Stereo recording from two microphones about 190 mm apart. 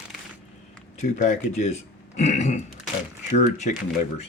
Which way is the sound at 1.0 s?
35° left (ahead or behind).